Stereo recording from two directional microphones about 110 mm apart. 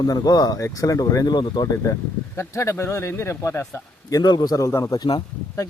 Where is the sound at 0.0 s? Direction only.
35° left (ahead or behind).